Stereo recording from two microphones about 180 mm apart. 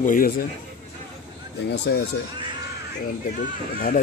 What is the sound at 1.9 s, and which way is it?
Speech, 70° left (ahead or behind).